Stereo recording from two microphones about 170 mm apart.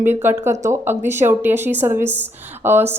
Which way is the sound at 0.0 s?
10° right (ahead or behind).